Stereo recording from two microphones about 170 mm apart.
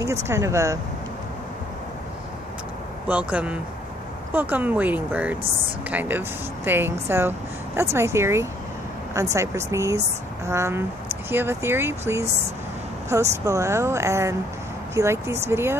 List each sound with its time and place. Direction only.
0.0 s speech: 15° right (ahead or behind)
3.1 s speech: 10° right (ahead or behind)